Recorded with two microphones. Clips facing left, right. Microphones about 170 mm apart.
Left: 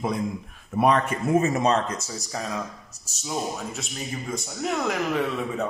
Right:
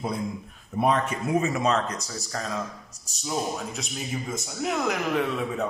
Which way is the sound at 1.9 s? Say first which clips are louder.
Left 2 dB; 25° left (ahead or behind).